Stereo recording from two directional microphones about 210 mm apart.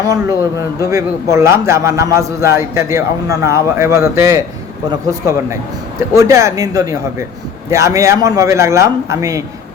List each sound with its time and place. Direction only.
0.8 s a man's voice: 15° right (ahead or behind)